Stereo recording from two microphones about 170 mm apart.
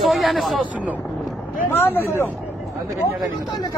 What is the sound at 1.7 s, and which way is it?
Speech, 10° left (ahead or behind).